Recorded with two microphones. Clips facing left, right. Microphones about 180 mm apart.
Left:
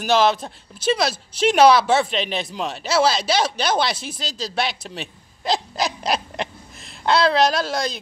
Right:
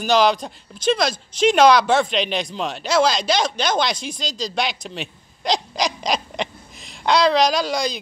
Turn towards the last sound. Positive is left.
turn(degrees=0)  # may be behind; listen again after turning